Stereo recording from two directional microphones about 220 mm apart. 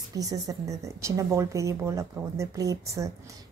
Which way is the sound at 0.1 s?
15° right (ahead or behind).